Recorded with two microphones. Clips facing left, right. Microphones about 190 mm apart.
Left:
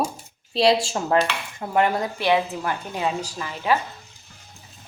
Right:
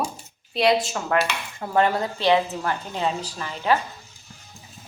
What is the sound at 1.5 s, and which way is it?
A woman's voice, 15° left (ahead or behind).